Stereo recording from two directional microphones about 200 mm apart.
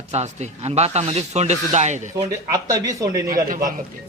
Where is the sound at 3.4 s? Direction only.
45° right (ahead or behind).